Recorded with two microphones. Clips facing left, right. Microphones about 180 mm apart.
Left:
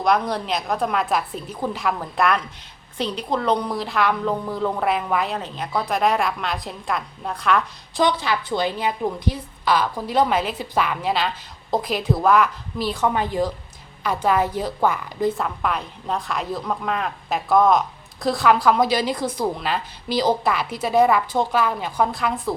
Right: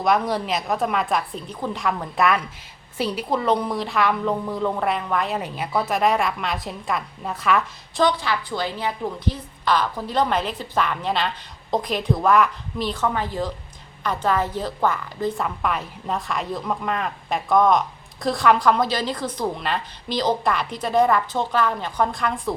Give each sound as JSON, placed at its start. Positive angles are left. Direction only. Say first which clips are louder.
{"t": 0.0, "sound": "a woman's voice", "louder": "even", "side_deg": 0}
{"t": 8.0, "sound": "a woman's voice", "louder": "even", "side_deg": 20}
{"t": 13.0, "sound": "a woman's voice", "louder": "left 5 dB", "side_deg": 15}
{"t": 15.4, "sound": "a woman's voice", "louder": "even", "side_deg": 0}